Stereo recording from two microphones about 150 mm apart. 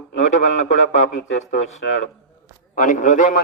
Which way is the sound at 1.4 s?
50° left (ahead or behind).